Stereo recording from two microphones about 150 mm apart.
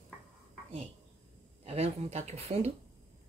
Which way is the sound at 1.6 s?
45° right (ahead or behind).